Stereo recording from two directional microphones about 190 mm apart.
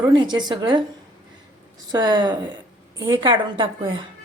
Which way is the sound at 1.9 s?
20° right (ahead or behind).